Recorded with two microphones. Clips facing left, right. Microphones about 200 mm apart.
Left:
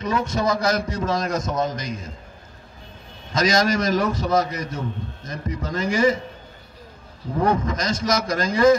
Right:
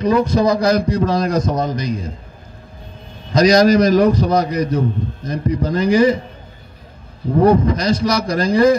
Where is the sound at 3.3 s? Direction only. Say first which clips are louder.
Right 9 dB; 35° right (ahead or behind).